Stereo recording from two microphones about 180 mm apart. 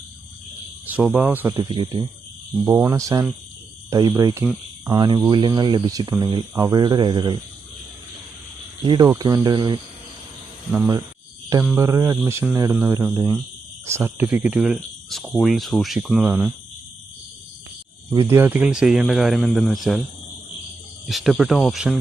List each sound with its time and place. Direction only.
0.9 s speech: 10° right (ahead or behind)
1.5 s speech: 25° right (ahead or behind)
2.6 s speech: 10° right (ahead or behind)
8.9 s speech: 20° right (ahead or behind)
11.8 s speech: 15° right (ahead or behind)
18.1 s speech: 15° right (ahead or behind); by 20.0 s centre (ahead or behind)
21.1 s speech: centre (ahead or behind)